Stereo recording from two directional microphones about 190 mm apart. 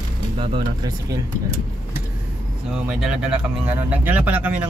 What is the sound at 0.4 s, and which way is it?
Speech, 20° right (ahead or behind).